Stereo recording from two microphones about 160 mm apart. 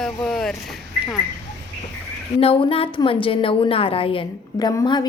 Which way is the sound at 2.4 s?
35° left (ahead or behind).